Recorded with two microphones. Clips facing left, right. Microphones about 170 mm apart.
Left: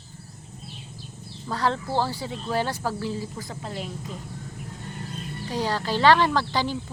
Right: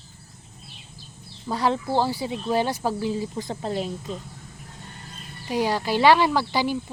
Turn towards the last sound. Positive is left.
turn(degrees=-10)  # may be behind; listen again after turning